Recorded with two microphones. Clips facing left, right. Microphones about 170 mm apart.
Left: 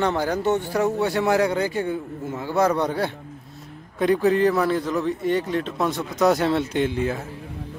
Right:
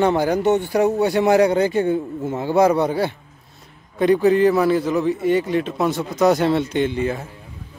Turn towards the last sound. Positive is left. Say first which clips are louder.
# right 2 dB
turn(degrees=0)  # may be behind; listen again after turning